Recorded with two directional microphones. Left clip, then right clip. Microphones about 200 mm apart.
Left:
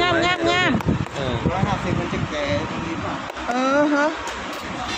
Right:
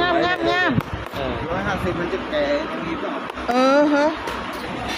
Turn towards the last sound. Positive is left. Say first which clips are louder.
# right 3 dB
turn(degrees=-5)  # may be behind; listen again after turning